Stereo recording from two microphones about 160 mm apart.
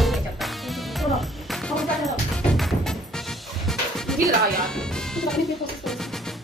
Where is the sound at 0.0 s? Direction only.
Centre (ahead or behind).